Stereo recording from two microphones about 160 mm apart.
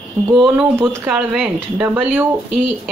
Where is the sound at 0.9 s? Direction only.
10° right (ahead or behind).